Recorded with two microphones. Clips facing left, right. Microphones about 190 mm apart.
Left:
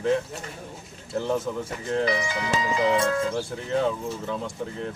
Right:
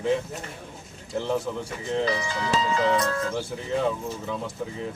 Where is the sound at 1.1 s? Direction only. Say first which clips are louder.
Left 1 dB; centre (ahead or behind).